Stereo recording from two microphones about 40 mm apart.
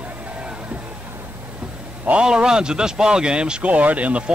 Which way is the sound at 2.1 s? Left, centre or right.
Centre.